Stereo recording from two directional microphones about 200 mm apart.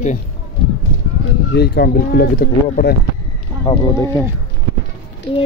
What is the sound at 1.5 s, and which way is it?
Speech, 55° left (ahead or behind).